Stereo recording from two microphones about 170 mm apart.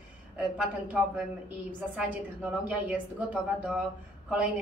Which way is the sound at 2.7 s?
10° right (ahead or behind).